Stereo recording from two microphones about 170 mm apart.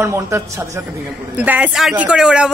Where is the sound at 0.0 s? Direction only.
15° right (ahead or behind).